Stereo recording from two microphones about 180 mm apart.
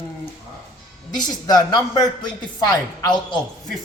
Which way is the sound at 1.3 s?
20° left (ahead or behind).